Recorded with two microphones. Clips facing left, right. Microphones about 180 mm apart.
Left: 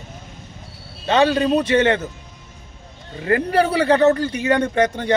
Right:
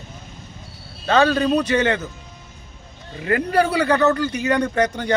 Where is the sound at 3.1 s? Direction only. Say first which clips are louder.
Left 1 dB; 30° left (ahead or behind).